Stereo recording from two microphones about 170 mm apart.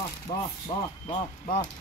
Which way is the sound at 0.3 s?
25° left (ahead or behind).